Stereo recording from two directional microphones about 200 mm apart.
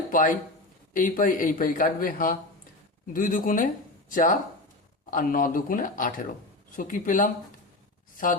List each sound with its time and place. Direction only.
0.1 s a man's voice: 45° left (ahead or behind)